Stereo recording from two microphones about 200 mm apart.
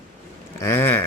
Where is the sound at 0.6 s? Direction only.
15° left (ahead or behind).